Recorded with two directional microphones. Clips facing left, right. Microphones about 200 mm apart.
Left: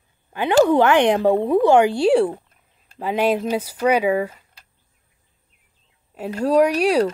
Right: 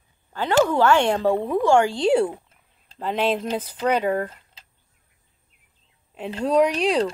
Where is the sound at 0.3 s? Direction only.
15° left (ahead or behind).